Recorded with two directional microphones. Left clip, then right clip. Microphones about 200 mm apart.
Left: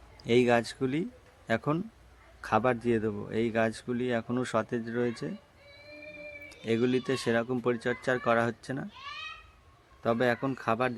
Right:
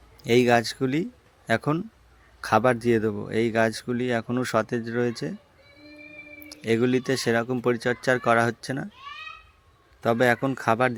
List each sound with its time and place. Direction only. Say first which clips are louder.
0.3 s a man's voice: right 5 dB; 15° right (ahead or behind)
6.5 s speech: right 5 dB; 15° right (ahead or behind)
10.0 s a man's voice: right 6 dB; 20° right (ahead or behind)